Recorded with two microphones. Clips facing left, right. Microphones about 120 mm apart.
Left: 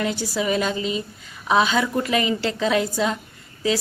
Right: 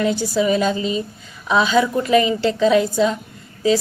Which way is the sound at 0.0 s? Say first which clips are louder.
Right 6 dB; 30° right (ahead or behind).